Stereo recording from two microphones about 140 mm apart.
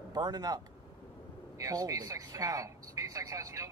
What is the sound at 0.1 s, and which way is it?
Speech, 30° right (ahead or behind).